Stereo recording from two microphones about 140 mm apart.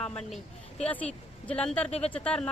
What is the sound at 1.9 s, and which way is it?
Speech, 50° left (ahead or behind).